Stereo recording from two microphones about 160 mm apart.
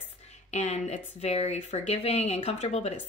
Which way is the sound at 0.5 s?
45° left (ahead or behind).